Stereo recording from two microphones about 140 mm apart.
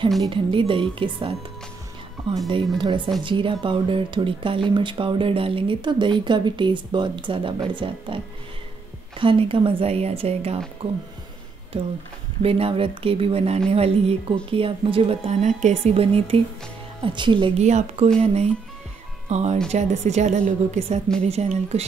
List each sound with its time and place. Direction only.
0.3 s speech: 40° right (ahead or behind)
2.5 s speech: 35° right (ahead or behind)
9.2 s a woman's voice: 40° right (ahead or behind)
12.4 s a woman's voice: 45° right (ahead or behind)
17.6 s a woman's voice: 55° right (ahead or behind)